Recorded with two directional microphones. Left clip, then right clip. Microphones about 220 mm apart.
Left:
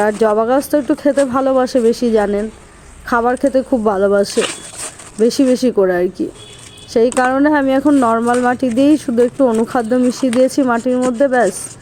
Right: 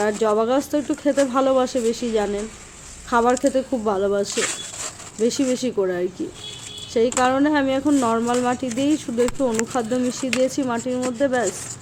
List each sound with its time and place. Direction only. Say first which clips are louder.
0.0 s speech: left 6 dB; 25° left (ahead or behind)